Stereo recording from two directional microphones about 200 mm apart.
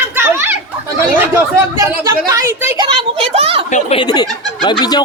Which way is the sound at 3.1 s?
30° right (ahead or behind).